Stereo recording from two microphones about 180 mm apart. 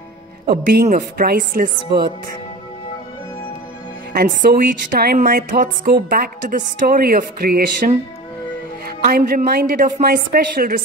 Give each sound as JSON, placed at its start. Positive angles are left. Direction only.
{"t": 0.5, "sound": "a woman's voice", "side_deg": -60}
{"t": 4.1, "sound": "a woman's voice", "side_deg": -55}
{"t": 9.0, "sound": "a woman's voice", "side_deg": -55}